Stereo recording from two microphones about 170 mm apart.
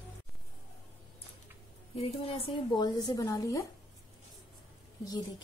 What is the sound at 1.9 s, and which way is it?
A woman's voice, 35° left (ahead or behind).